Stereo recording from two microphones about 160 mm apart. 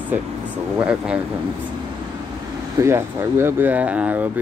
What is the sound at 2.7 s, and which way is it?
Speech, 15° right (ahead or behind).